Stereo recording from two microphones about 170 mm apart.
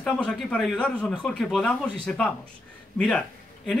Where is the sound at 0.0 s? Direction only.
5° left (ahead or behind).